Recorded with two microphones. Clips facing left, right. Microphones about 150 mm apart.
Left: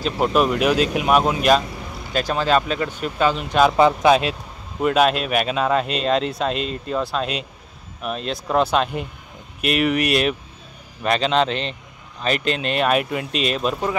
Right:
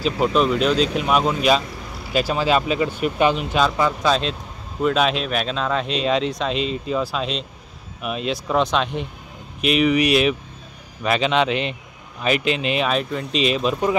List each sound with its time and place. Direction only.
0.0 s speech: 5° left (ahead or behind); by 3.3 s 15° right (ahead or behind)
3.7 s speech: 25° left (ahead or behind)
4.8 s speech: 5° left (ahead or behind)